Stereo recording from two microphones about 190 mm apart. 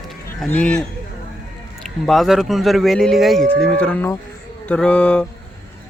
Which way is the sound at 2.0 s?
Centre (ahead or behind).